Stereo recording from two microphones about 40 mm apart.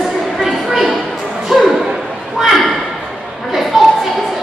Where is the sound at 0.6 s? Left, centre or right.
Centre.